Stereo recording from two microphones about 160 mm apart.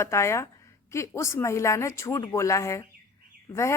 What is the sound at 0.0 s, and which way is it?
A woman's voice, 15° left (ahead or behind).